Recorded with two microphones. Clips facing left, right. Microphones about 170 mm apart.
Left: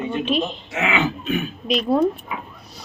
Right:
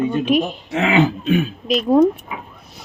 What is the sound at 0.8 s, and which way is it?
Throat clearing, 35° right (ahead or behind).